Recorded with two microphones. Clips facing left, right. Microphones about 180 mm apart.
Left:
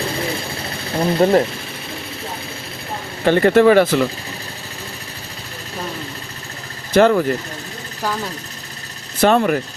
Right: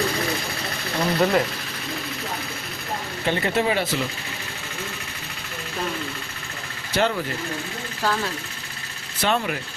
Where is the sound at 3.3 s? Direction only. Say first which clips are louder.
Left 11 dB; 55° left (ahead or behind).